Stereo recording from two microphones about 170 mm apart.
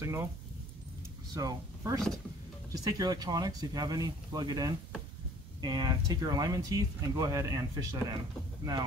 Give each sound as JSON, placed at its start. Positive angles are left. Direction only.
{"t": 0.0, "sound": "speech", "side_deg": -15}
{"t": 1.3, "sound": "speech", "side_deg": -20}